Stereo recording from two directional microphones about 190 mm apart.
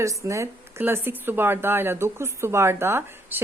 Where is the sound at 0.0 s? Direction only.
15° right (ahead or behind).